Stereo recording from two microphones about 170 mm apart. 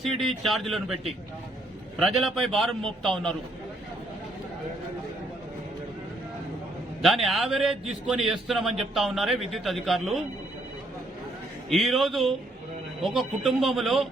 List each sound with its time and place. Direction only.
0.0 s a man's voice: centre (ahead or behind)
2.0 s a man's voice: centre (ahead or behind)
7.0 s a man's voice: centre (ahead or behind)
11.7 s a man's voice: centre (ahead or behind)